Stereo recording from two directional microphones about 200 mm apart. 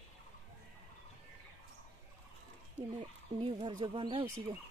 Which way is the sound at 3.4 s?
25° right (ahead or behind).